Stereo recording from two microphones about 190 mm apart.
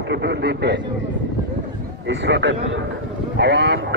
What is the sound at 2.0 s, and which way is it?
A man's voice, 70° right (ahead or behind).